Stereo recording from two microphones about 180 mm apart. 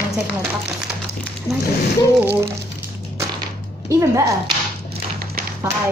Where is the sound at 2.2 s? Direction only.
10° right (ahead or behind).